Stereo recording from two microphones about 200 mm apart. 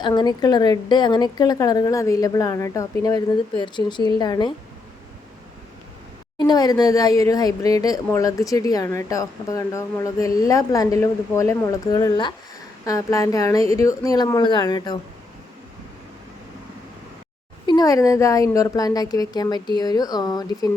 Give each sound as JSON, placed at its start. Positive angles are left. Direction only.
{"t": 0.0, "sound": "a woman's voice", "side_deg": 20}
{"t": 6.4, "sound": "a woman's voice", "side_deg": 20}
{"t": 17.7, "sound": "a woman's voice", "side_deg": 20}